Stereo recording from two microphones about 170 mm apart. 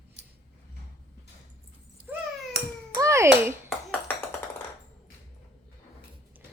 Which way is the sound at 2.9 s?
15° right (ahead or behind).